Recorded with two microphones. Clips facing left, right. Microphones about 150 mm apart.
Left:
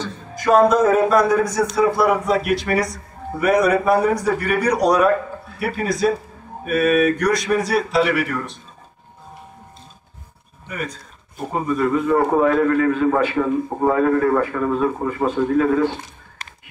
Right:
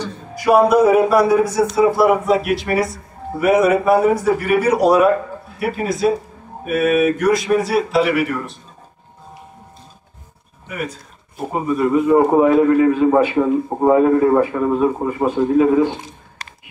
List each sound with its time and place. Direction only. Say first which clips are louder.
0.0 s a man's voice: right 2 dB; 10° right (ahead or behind)
10.7 s a man's voice: right 2 dB; 5° right (ahead or behind)